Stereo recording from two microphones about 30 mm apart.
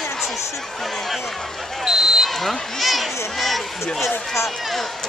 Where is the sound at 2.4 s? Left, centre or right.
Centre.